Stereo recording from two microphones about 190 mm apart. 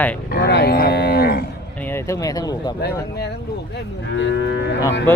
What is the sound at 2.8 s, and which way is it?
Speech, 60° left (ahead or behind).